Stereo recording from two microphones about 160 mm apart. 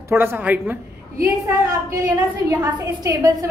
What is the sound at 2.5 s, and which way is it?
Speech, 20° right (ahead or behind).